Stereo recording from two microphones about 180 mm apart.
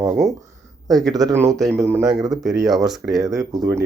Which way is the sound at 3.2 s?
20° right (ahead or behind).